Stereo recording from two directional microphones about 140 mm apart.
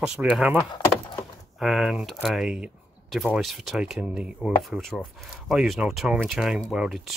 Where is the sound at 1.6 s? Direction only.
5° right (ahead or behind).